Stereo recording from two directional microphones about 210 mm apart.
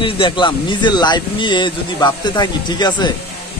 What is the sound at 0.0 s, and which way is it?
Speech, 25° left (ahead or behind).